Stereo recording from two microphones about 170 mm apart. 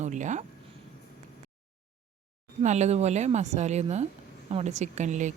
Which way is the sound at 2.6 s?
40° right (ahead or behind).